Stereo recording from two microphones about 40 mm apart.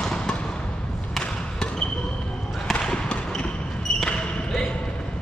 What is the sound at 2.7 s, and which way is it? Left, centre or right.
Basketball bounce, left.